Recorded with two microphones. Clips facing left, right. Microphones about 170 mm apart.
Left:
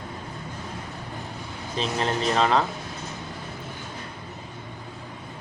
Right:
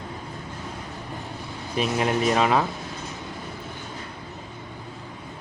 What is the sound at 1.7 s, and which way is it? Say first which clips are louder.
Speech: right 3 dB; 10° right (ahead or behind).